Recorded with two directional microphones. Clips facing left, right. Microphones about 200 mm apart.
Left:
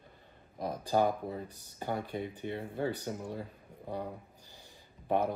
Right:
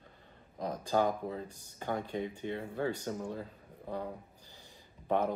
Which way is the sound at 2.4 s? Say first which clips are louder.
Even; 15° left (ahead or behind).